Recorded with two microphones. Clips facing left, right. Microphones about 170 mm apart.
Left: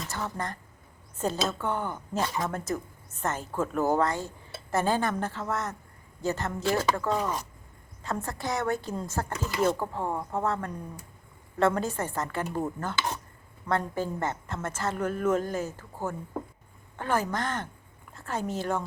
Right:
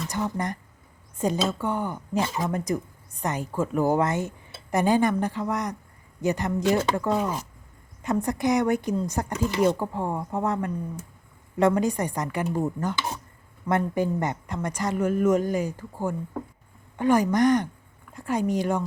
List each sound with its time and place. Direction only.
0.1 s a woman's voice: 15° right (ahead or behind)